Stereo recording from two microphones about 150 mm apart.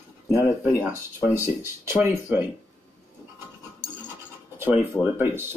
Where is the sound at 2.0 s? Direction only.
15° right (ahead or behind).